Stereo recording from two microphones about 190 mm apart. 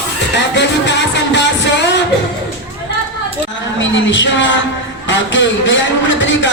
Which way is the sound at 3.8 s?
75° left (ahead or behind).